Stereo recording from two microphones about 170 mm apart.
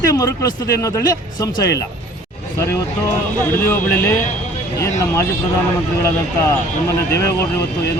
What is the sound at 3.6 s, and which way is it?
Speech, 15° left (ahead or behind).